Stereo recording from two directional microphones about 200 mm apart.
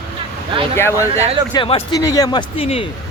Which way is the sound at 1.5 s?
25° left (ahead or behind).